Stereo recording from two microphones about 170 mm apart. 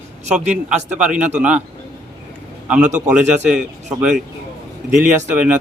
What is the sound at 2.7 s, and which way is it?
Speech, 5° right (ahead or behind).